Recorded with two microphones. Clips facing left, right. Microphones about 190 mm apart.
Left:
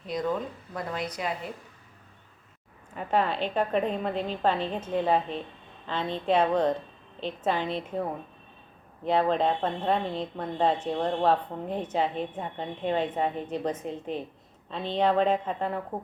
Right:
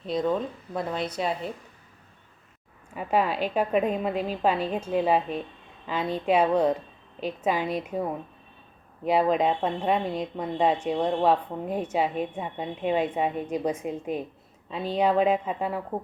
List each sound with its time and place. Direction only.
0.1 s speech: 25° right (ahead or behind)
2.9 s speech: 10° right (ahead or behind)
9.0 s speech: 10° right (ahead or behind)